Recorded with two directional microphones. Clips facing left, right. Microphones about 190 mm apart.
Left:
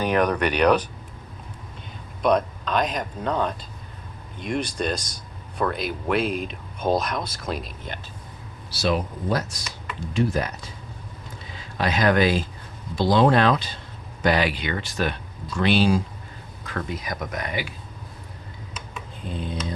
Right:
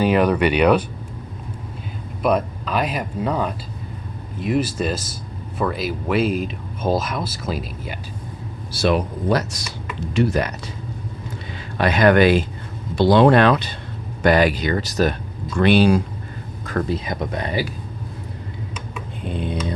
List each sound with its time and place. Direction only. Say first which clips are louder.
0.0 s speech: right 5 dB; 10° right (ahead or behind)
2.2 s speech: right 1 dB; 5° right (ahead or behind)
8.7 s speech: right 5 dB; 60° right (ahead or behind)
11.5 s speech: right 5 dB; 60° right (ahead or behind)
14.2 s speech: right 6 dB; 50° right (ahead or behind)
15.5 s speech: right 5 dB; 55° right (ahead or behind)
16.9 s speech: right 6 dB; 25° right (ahead or behind)
19.3 s speech: right 5 dB; 65° right (ahead or behind)